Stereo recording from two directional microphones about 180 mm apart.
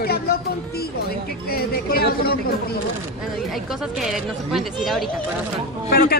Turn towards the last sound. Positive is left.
turn(degrees=60)  # may be behind; listen again after turning